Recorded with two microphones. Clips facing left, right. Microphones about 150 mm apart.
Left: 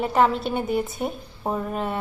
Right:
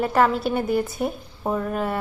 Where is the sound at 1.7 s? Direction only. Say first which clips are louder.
Right 2 dB; centre (ahead or behind).